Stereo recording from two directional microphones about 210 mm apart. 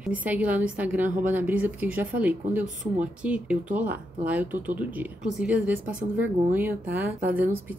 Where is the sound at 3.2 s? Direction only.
5° right (ahead or behind).